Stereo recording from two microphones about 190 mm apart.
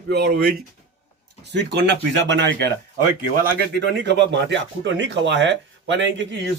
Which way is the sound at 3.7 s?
65° right (ahead or behind).